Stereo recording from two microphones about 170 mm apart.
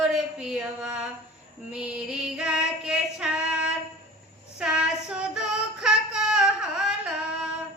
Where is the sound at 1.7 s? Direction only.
5° right (ahead or behind).